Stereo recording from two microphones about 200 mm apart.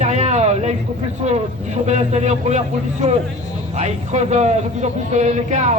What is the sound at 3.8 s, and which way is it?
A man's voice, 35° right (ahead or behind).